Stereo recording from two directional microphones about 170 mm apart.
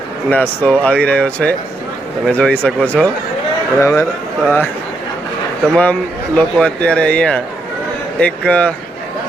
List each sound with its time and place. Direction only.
0.3 s a man's voice: 10° left (ahead or behind)
5.7 s a man's voice: 10° left (ahead or behind)